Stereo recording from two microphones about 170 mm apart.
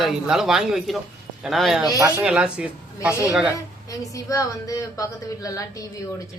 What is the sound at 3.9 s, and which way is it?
A woman's voice, 20° left (ahead or behind).